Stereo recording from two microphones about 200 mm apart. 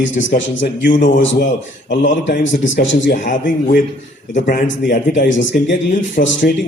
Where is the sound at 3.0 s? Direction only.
45° left (ahead or behind).